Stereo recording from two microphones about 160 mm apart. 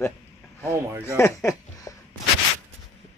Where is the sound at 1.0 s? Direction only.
15° left (ahead or behind).